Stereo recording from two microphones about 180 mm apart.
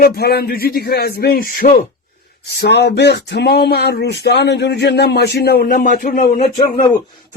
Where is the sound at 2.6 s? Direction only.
70° left (ahead or behind); by 6.2 s 50° left (ahead or behind).